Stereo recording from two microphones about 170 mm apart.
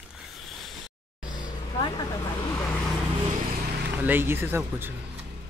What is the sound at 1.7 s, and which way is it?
Vehicle, 25° left (ahead or behind).